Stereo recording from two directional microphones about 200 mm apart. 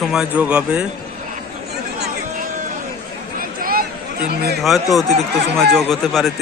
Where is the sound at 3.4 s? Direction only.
45° right (ahead or behind).